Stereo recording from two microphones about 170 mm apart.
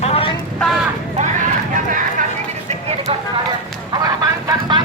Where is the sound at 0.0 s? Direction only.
35° left (ahead or behind).